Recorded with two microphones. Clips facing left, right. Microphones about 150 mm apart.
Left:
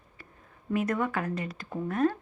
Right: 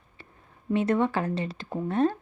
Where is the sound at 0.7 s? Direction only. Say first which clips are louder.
Right 4 dB; 25° right (ahead or behind).